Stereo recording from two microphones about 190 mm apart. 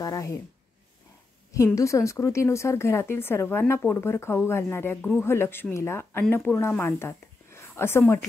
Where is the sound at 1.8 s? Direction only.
15° left (ahead or behind).